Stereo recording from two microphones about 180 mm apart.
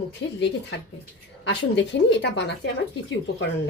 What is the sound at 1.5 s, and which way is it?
Speech, 75° left (ahead or behind).